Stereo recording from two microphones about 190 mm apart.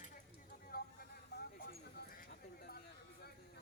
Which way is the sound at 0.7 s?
50° left (ahead or behind).